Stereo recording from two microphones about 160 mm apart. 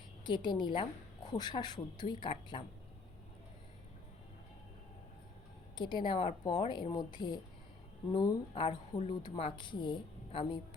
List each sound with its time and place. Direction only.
0.3 s a woman's voice: 30° left (ahead or behind)
5.7 s a woman's voice: 30° left (ahead or behind)